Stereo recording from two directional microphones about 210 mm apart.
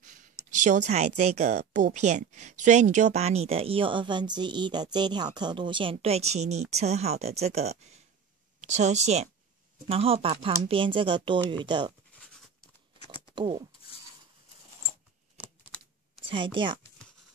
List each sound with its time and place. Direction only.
0.0 s a woman's voice: 35° right (ahead or behind)
13.1 s a sound: 20° right (ahead or behind)
16.3 s speech: 25° right (ahead or behind)